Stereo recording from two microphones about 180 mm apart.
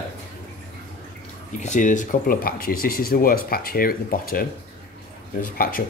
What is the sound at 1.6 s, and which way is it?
Speech, 45° left (ahead or behind).